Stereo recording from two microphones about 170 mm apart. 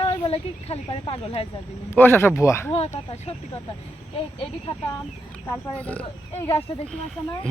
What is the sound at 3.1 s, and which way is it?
Speech, 35° left (ahead or behind).